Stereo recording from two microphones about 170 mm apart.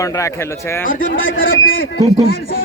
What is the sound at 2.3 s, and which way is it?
Speech, 60° left (ahead or behind).